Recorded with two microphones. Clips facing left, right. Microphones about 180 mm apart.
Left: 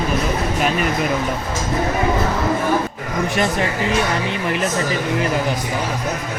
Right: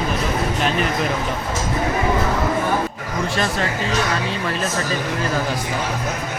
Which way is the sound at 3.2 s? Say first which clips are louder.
Left 2 dB; 20° left (ahead or behind).